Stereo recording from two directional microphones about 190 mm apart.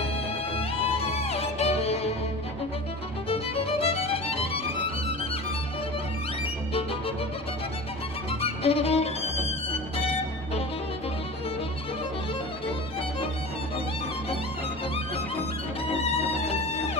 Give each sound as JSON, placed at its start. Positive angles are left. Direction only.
{"t": 0.6, "sound": "music", "side_deg": 30}
{"t": 3.3, "sound": "music", "side_deg": 30}
{"t": 8.3, "sound": "violin", "side_deg": 30}
{"t": 16.4, "sound": "music", "side_deg": 35}